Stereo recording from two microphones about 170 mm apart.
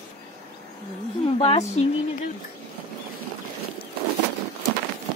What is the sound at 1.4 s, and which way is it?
Speech, 35° left (ahead or behind).